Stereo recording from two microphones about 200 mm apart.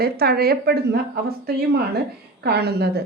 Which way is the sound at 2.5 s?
55° right (ahead or behind).